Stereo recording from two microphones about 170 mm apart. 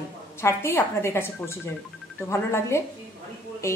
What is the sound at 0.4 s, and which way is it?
Speech, 15° left (ahead or behind).